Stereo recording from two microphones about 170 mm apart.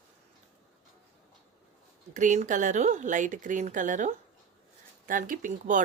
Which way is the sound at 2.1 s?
45° right (ahead or behind).